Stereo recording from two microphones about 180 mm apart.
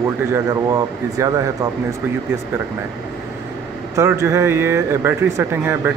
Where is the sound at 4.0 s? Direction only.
15° right (ahead or behind).